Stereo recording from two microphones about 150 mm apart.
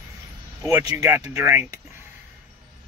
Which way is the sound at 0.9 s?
15° right (ahead or behind).